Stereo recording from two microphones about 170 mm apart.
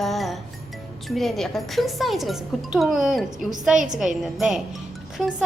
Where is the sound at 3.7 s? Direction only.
45° right (ahead or behind).